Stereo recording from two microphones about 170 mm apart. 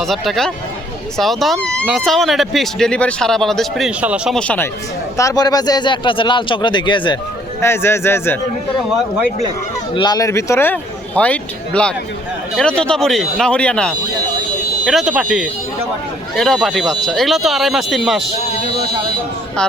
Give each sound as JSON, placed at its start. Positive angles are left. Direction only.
{"t": 0.0, "sound": "speech", "side_deg": 0}
{"t": 4.4, "sound": "speech", "side_deg": 10}
{"t": 5.1, "sound": "speech", "side_deg": 20}
{"t": 7.6, "sound": "speech", "side_deg": 15}
{"t": 9.9, "sound": "speech", "side_deg": 25}